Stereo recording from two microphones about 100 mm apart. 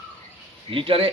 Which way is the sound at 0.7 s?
60° right (ahead or behind).